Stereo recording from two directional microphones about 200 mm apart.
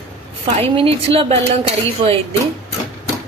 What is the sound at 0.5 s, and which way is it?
A woman's voice, 30° right (ahead or behind).